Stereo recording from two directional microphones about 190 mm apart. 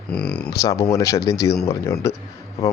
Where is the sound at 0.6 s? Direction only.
15° left (ahead or behind).